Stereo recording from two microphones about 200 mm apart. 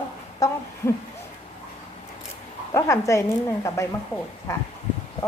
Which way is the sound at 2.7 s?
15° left (ahead or behind).